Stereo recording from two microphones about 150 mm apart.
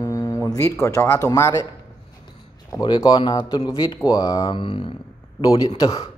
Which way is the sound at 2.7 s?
25° left (ahead or behind).